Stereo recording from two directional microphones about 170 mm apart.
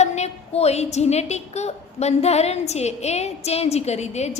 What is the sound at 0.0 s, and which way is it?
A woman's voice, 40° left (ahead or behind).